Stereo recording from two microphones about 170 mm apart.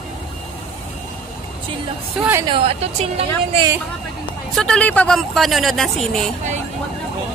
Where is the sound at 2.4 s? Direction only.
30° right (ahead or behind).